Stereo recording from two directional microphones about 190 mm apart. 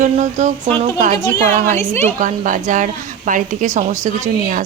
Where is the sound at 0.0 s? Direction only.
40° right (ahead or behind).